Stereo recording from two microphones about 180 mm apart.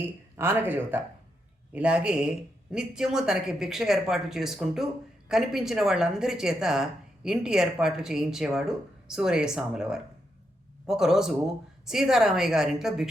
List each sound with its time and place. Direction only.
0.0 s a woman's voice: 10° right (ahead or behind)